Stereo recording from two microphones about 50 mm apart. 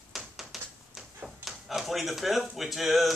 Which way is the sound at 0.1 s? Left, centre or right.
Centre.